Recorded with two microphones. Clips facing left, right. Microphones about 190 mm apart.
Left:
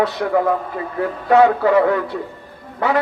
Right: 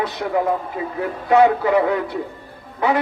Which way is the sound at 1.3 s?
20° right (ahead or behind).